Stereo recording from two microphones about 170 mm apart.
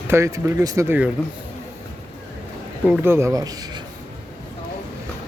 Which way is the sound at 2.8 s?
10° right (ahead or behind).